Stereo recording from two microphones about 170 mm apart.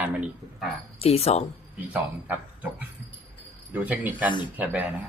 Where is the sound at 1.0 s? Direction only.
35° left (ahead or behind).